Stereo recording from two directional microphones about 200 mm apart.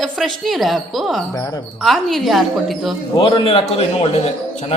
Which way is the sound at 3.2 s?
25° left (ahead or behind).